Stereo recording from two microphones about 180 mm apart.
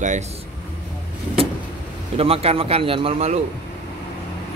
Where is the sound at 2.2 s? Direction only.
35° right (ahead or behind).